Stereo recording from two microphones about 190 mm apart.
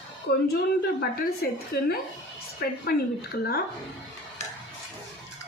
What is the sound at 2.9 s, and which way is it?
Speech, 55° left (ahead or behind).